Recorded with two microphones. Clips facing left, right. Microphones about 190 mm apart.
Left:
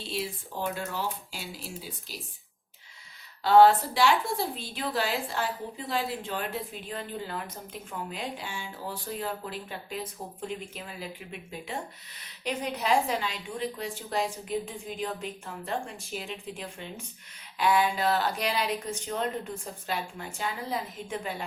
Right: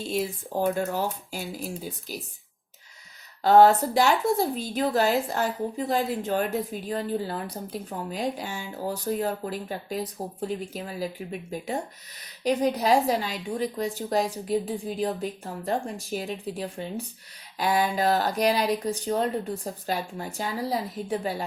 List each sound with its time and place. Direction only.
0.0 s speech: 45° right (ahead or behind)
3.4 s a woman's voice: 45° right (ahead or behind)